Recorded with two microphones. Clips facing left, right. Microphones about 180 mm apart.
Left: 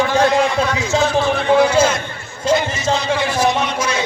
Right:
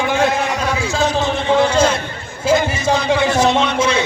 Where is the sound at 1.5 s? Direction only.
10° left (ahead or behind).